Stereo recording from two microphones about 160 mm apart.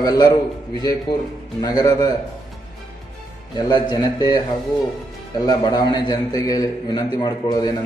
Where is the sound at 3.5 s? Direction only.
25° left (ahead or behind).